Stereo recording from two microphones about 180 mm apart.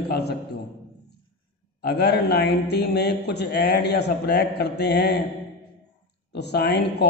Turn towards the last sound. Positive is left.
turn(degrees=65)  # may be behind; listen again after turning